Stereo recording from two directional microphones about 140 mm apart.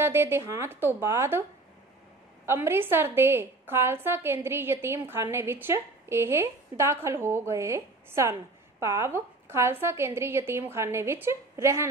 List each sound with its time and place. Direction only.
0.0 s a woman's voice: 15° right (ahead or behind)
2.4 s a woman's voice: 15° right (ahead or behind)